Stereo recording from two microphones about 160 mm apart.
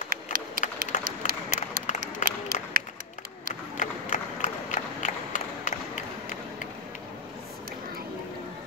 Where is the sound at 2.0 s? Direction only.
65° right (ahead or behind).